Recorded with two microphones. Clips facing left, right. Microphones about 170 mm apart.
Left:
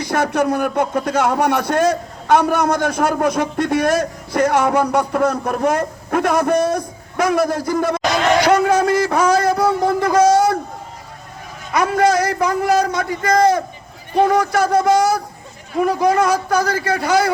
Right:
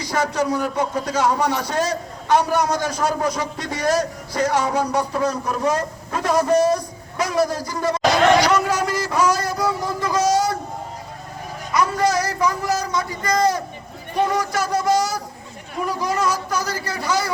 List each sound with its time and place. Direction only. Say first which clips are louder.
0.0 s a man's voice: left 4 dB; 55° left (ahead or behind)
11.7 s a man's voice: left 4 dB; 55° left (ahead or behind)